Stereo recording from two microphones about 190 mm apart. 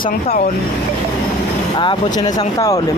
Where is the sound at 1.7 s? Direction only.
20° left (ahead or behind).